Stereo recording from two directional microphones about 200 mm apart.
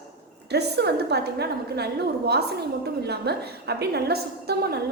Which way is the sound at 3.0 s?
55° right (ahead or behind).